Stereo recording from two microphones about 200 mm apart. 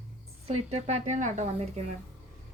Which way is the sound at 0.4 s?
30° right (ahead or behind).